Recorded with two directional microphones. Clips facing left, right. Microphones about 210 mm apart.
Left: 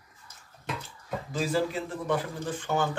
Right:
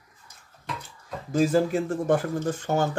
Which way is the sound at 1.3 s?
45° right (ahead or behind).